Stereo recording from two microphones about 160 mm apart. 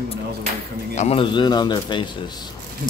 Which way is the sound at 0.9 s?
35° left (ahead or behind).